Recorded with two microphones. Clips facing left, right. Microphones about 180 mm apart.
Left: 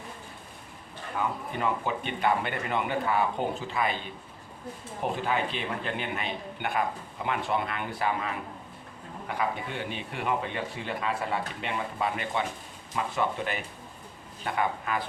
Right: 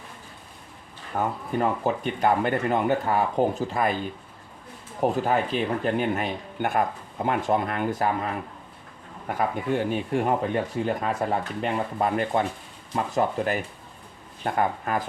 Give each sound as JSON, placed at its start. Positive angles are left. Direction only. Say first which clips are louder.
{"t": 1.1, "sound": "speech", "louder": "right 5 dB", "side_deg": -45}
{"t": 5.1, "sound": "speech", "louder": "right 6 dB", "side_deg": -40}